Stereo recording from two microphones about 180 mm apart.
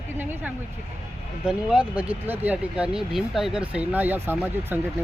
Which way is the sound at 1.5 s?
5° right (ahead or behind).